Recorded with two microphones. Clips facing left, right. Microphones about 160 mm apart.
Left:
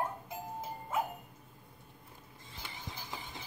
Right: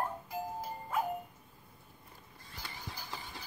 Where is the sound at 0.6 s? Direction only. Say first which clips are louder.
Left 2 dB; 20° left (ahead or behind).